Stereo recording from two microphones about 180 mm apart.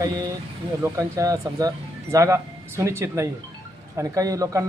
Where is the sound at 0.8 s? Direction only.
15° right (ahead or behind).